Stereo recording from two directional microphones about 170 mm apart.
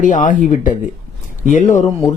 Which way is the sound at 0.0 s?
50° left (ahead or behind).